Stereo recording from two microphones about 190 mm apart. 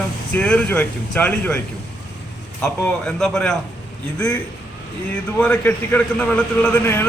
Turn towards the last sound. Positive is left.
turn(degrees=10)  # may be behind; listen again after turning